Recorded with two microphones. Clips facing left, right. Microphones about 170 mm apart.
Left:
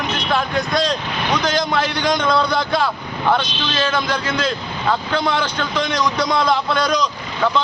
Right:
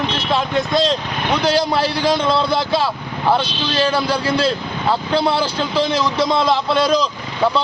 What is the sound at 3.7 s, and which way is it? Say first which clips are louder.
Speech: right 3 dB; 35° right (ahead or behind).